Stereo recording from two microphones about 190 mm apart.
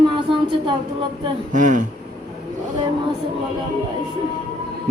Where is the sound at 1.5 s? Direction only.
40° right (ahead or behind).